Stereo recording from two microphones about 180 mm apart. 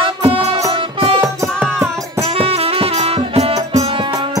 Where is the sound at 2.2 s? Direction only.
35° right (ahead or behind).